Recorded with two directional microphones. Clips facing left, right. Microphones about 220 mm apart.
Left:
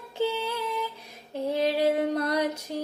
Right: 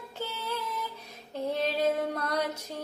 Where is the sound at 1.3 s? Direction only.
10° left (ahead or behind).